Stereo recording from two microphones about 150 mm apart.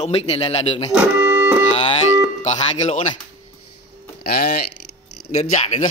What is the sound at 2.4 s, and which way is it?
Speech, 50° left (ahead or behind).